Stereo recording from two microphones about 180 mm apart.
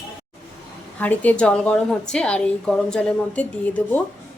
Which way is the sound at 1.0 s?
10° left (ahead or behind).